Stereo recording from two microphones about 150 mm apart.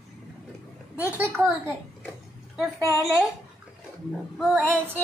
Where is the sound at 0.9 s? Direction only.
10° right (ahead or behind).